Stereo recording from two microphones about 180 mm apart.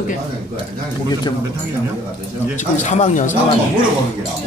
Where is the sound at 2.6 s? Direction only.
40° left (ahead or behind).